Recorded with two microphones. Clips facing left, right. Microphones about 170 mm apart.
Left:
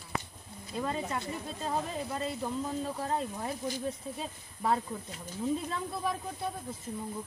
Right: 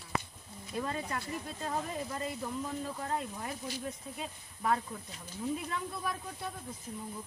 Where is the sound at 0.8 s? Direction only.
25° left (ahead or behind).